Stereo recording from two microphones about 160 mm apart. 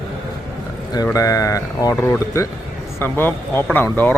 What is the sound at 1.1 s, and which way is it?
Speech, 20° left (ahead or behind).